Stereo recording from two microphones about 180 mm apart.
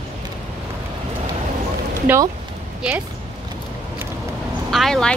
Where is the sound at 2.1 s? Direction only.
10° right (ahead or behind).